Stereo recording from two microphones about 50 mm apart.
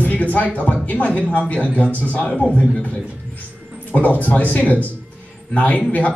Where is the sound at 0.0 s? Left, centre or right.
Left.